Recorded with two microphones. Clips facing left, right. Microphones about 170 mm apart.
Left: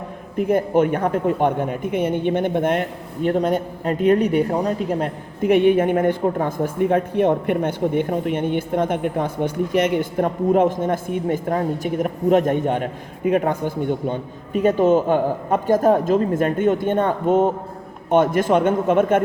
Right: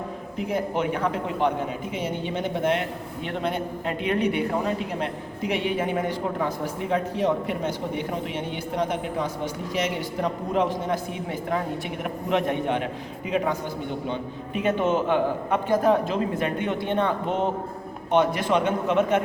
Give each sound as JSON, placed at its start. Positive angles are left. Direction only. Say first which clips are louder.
{"t": 0.3, "sound": "speech", "louder": "left 9 dB", "side_deg": 50}